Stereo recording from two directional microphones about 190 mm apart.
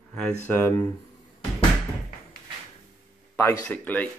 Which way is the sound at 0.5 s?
10° left (ahead or behind).